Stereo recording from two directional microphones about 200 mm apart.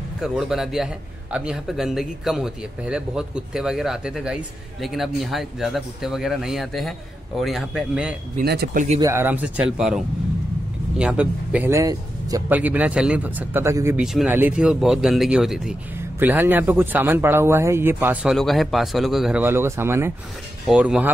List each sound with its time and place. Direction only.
0.2 s a man's voice: centre (ahead or behind)
8.4 s speech: 50° right (ahead or behind)
9.0 s a man's voice: 10° right (ahead or behind)